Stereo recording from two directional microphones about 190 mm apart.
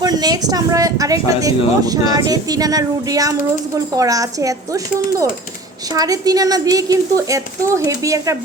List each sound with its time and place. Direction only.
0.0 s speech: 20° right (ahead or behind)
5.9 s speech: 20° right (ahead or behind)